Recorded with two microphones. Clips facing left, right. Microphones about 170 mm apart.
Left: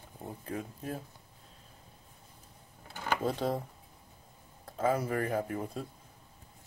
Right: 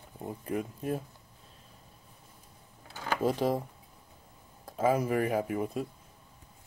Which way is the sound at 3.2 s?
15° right (ahead or behind).